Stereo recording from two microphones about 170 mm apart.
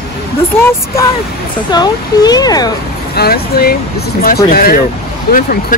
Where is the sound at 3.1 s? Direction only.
65° left (ahead or behind).